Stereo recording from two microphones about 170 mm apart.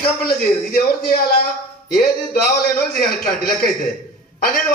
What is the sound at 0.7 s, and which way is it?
Speech, 60° left (ahead or behind).